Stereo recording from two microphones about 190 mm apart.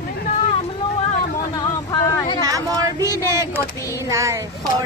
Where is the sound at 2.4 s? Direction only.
20° right (ahead or behind).